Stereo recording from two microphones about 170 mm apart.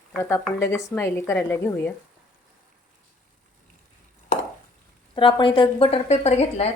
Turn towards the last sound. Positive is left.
turn(degrees=40)  # may be behind; listen again after turning